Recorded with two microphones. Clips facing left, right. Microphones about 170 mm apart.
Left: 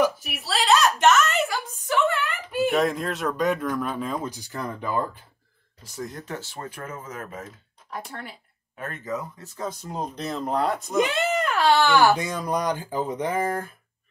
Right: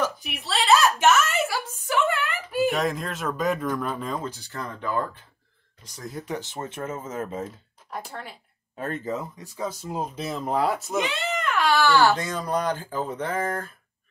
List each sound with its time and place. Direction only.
0.0 s a sound: 5° left (ahead or behind)
4.2 s speech: 15° left (ahead or behind)
5.9 s speech: centre (ahead or behind)
6.2 s speech: 15° right (ahead or behind)
7.9 s speech: centre (ahead or behind)
8.7 s speech: 30° right (ahead or behind)
9.4 s speech: 10° right (ahead or behind)
11.1 s a sound: 40° left (ahead or behind)
11.7 s speech: 15° left (ahead or behind)